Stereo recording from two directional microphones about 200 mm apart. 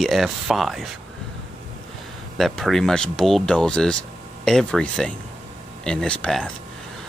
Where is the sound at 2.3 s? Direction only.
Centre (ahead or behind).